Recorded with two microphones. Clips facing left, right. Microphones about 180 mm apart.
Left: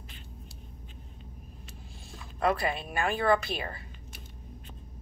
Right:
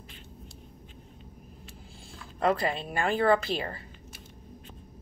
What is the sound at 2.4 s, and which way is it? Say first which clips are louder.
Speech: right 1 dB; 25° right (ahead or behind).